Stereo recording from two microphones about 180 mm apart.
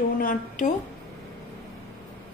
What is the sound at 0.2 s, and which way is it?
Speech, 45° left (ahead or behind).